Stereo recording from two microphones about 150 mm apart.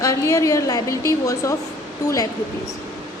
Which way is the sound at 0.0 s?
20° left (ahead or behind).